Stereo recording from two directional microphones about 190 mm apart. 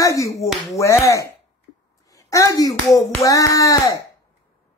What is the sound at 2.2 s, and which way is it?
Hands, 15° left (ahead or behind).